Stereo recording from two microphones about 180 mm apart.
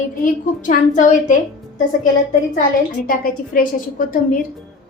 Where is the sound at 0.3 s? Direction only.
45° left (ahead or behind).